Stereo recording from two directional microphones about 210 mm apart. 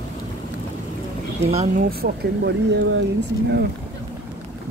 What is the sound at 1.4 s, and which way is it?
Speech, 30° right (ahead or behind).